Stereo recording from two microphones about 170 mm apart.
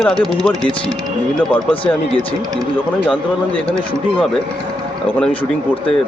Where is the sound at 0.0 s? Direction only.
Centre (ahead or behind).